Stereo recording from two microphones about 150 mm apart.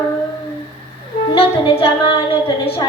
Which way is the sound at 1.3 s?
40° left (ahead or behind).